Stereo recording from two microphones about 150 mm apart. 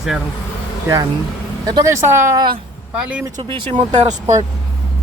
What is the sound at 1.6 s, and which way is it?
Speech, 25° right (ahead or behind).